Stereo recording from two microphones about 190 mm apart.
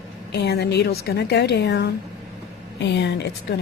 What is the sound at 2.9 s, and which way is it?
Speech, 65° left (ahead or behind).